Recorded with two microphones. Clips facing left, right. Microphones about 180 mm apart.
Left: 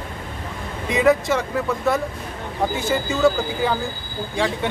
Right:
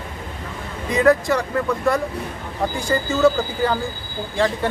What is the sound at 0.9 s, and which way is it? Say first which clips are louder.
Speech: right 1 dB; centre (ahead or behind).